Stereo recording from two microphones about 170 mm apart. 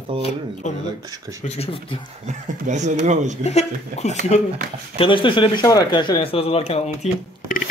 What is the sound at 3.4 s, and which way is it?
Speech, 40° left (ahead or behind).